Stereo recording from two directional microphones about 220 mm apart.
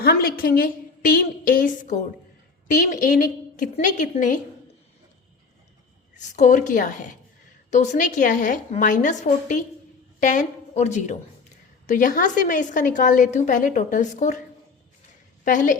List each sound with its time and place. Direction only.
0.0 s a woman's voice: 45° left (ahead or behind)
6.1 s a woman's voice: 35° left (ahead or behind)
15.4 s a woman's voice: 35° left (ahead or behind)